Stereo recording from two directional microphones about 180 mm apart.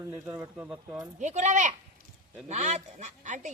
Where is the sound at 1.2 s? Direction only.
40° right (ahead or behind).